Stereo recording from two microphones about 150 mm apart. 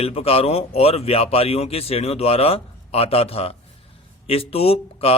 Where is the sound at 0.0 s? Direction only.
40° left (ahead or behind).